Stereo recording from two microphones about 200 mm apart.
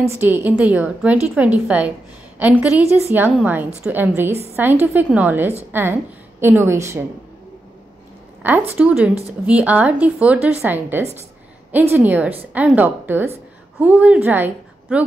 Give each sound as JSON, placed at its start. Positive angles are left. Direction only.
{"t": 0.1, "sound": "a woman's voice", "side_deg": -10}
{"t": 4.3, "sound": "a woman's voice", "side_deg": -30}
{"t": 4.6, "sound": "a woman's voice", "side_deg": -10}
{"t": 8.4, "sound": "a woman's voice", "side_deg": -10}